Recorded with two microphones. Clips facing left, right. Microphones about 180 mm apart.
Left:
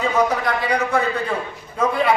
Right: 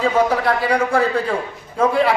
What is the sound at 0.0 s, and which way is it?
A man's voice, 30° right (ahead or behind).